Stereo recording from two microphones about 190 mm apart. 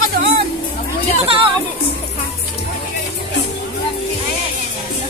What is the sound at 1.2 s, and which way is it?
Speech, 30° right (ahead or behind).